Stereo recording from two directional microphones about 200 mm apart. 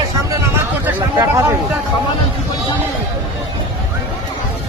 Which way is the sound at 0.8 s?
10° right (ahead or behind).